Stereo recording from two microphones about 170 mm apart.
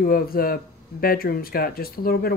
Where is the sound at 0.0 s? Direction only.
60° left (ahead or behind).